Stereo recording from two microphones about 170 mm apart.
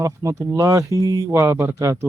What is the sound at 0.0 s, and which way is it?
Speech, 20° right (ahead or behind).